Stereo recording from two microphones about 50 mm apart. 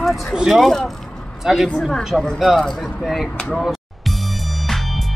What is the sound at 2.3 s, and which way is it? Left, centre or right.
Speech, centre.